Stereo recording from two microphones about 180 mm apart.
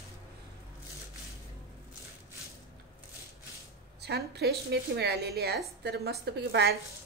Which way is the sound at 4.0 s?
65° right (ahead or behind).